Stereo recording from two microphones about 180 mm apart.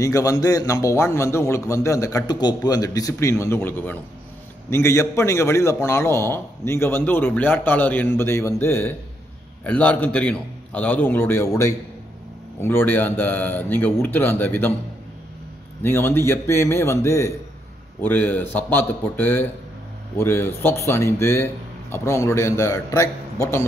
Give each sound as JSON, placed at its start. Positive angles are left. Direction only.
{"t": 0.0, "sound": "a man's voice", "side_deg": 20}
{"t": 15.8, "sound": "a man's voice", "side_deg": 10}